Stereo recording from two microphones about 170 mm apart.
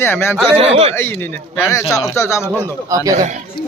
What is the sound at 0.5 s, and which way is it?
Speech, 35° right (ahead or behind).